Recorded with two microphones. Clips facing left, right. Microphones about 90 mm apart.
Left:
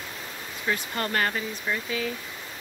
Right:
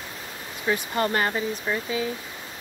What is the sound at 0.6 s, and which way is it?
Speech, 20° right (ahead or behind).